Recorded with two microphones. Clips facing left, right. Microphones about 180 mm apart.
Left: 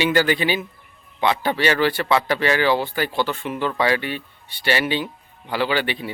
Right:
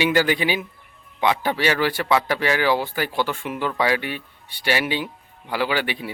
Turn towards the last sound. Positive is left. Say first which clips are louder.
# left 1 dB
turn(degrees=-10)  # may be behind; listen again after turning